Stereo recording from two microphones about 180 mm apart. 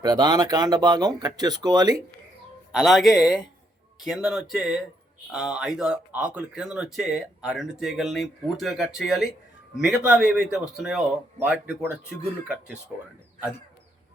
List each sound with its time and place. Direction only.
0.0 s speech: 20° right (ahead or behind)
2.7 s speech: centre (ahead or behind)